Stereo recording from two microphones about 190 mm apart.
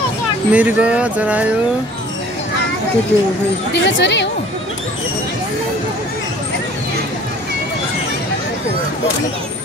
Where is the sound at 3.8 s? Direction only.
70° left (ahead or behind).